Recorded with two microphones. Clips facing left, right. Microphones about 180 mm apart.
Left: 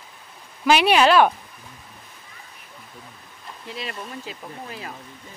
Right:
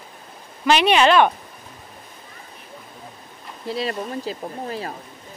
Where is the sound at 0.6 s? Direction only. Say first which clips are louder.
Right 1 dB; 5° left (ahead or behind).